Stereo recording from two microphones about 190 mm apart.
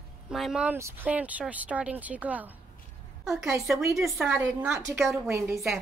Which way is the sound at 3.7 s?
15° right (ahead or behind).